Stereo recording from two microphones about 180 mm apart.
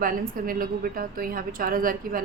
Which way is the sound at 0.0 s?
50° right (ahead or behind).